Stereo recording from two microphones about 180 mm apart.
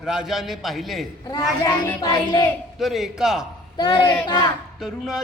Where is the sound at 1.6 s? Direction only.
20° left (ahead or behind).